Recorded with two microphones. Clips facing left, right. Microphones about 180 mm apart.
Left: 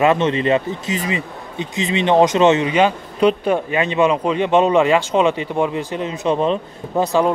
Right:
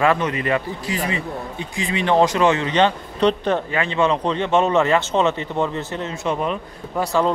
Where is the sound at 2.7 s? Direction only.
10° left (ahead or behind).